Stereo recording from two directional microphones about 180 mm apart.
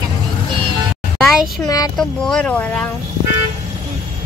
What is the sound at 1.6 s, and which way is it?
Speech, 20° left (ahead or behind).